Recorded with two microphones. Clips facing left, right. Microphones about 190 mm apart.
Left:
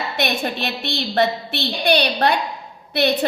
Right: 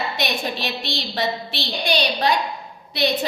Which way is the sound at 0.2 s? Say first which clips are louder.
Left 6 dB; 55° left (ahead or behind).